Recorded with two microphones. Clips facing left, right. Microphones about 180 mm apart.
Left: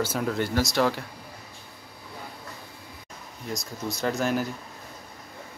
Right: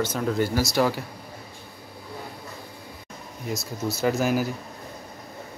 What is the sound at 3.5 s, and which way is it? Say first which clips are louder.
Speech: right 3 dB; 5° right (ahead or behind).